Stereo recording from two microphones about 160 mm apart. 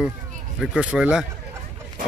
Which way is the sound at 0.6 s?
5° right (ahead or behind).